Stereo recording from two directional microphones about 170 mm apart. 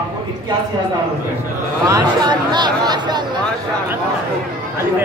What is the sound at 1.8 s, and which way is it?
Speech, 25° right (ahead or behind).